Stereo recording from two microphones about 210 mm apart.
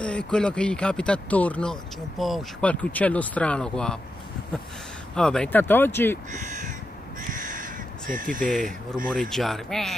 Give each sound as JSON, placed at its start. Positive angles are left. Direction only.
{"t": 0.0, "sound": "speech", "side_deg": 5}
{"t": 5.1, "sound": "speech", "side_deg": 5}
{"t": 6.3, "sound": "speech", "side_deg": -35}
{"t": 7.2, "sound": "crow", "side_deg": -40}
{"t": 8.1, "sound": "speech", "side_deg": -40}
{"t": 8.5, "sound": "speech", "side_deg": 5}